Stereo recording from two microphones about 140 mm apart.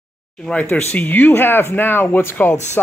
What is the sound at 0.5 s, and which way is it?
Speech, 10° left (ahead or behind).